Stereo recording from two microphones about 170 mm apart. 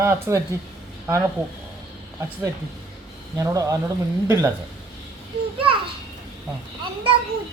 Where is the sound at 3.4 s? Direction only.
20° right (ahead or behind).